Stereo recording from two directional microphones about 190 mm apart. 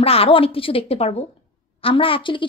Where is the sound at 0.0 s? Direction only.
30° left (ahead or behind).